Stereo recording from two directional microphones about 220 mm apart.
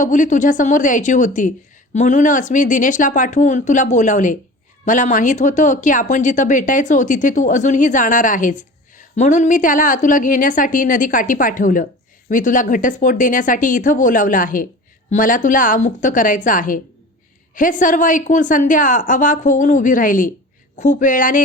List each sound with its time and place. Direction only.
0.0 s speech: 35° left (ahead or behind)